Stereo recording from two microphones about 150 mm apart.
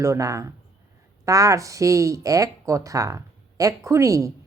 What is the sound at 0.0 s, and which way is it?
Speech, 20° right (ahead or behind).